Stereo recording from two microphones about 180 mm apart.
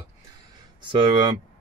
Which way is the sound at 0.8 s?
25° right (ahead or behind).